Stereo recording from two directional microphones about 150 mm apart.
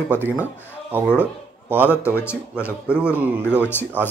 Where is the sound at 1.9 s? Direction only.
15° left (ahead or behind).